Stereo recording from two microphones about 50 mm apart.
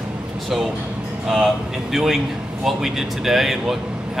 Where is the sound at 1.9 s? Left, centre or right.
Centre.